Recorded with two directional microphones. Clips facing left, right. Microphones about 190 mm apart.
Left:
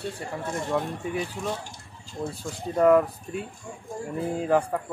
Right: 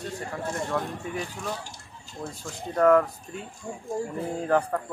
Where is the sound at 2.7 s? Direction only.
10° left (ahead or behind).